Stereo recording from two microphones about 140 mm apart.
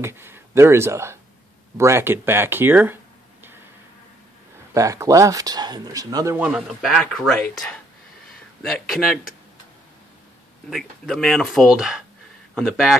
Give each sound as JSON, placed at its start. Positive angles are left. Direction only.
{"t": 0.0, "sound": "speech", "side_deg": -15}
{"t": 4.7, "sound": "speech", "side_deg": -25}
{"t": 6.3, "sound": "speech", "side_deg": -10}
{"t": 6.7, "sound": "speech", "side_deg": 0}
{"t": 10.7, "sound": "speech", "side_deg": 0}